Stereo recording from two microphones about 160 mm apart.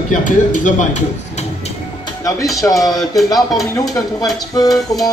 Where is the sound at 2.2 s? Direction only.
20° left (ahead or behind).